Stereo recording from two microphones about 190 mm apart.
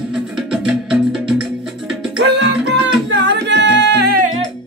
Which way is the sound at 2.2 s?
70° right (ahead or behind).